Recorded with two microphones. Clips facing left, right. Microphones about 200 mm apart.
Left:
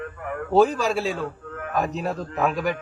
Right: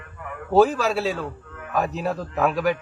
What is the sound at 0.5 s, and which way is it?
A man's voice, 5° right (ahead or behind).